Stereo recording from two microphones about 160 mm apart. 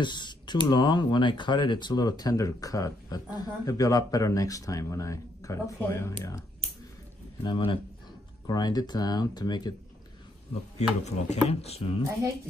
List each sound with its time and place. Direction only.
0.0 s speech: 30° left (ahead or behind)
7.4 s speech: 30° left (ahead or behind)
10.8 s speech: 45° left (ahead or behind)